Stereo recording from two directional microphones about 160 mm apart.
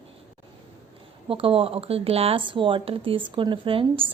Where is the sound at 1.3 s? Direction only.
35° right (ahead or behind).